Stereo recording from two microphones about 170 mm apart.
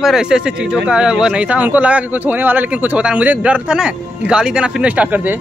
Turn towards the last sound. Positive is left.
turn(degrees=-10)  # may be behind; listen again after turning